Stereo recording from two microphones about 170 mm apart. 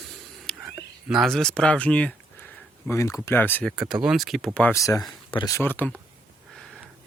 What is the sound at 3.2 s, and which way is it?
Speech, 10° left (ahead or behind).